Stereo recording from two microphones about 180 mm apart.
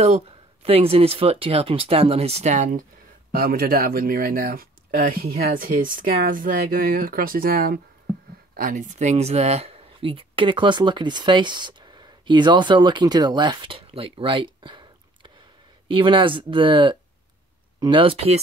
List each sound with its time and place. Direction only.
0.0 s speech: 35° right (ahead or behind)
3.3 s speech: 60° right (ahead or behind)
8.5 s speech: 45° right (ahead or behind)